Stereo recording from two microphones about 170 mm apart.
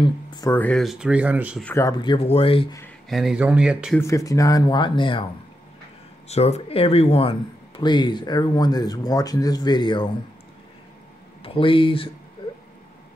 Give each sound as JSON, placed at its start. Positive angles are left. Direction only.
{"t": 0.0, "sound": "speech", "side_deg": 25}
{"t": 0.5, "sound": "speech", "side_deg": 10}
{"t": 1.6, "sound": "speech", "side_deg": 15}
{"t": 2.0, "sound": "speech", "side_deg": 30}
{"t": 3.1, "sound": "speech", "side_deg": 0}
{"t": 4.0, "sound": "speech", "side_deg": 20}
{"t": 6.2, "sound": "speech", "side_deg": 40}
{"t": 11.4, "sound": "speech", "side_deg": 30}
{"t": 12.4, "sound": "a sound", "side_deg": 30}